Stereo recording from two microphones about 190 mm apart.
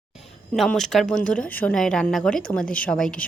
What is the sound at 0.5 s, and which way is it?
A woman's voice, centre (ahead or behind).